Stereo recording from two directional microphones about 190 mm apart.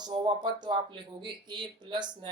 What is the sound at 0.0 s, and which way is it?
Speech, 20° right (ahead or behind).